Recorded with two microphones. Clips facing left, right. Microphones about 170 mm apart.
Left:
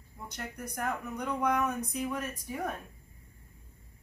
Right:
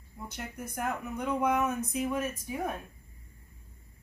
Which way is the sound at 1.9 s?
20° right (ahead or behind).